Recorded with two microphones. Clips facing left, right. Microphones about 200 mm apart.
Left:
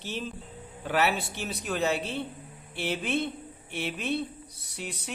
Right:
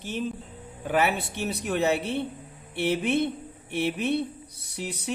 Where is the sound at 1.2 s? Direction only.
60° right (ahead or behind).